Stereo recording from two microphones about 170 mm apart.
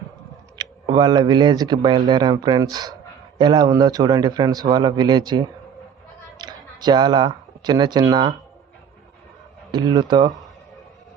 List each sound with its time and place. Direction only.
0.5 s speech: 25° right (ahead or behind)
9.7 s speech: 25° right (ahead or behind)